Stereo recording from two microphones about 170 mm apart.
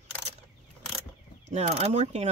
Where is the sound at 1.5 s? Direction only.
40° right (ahead or behind).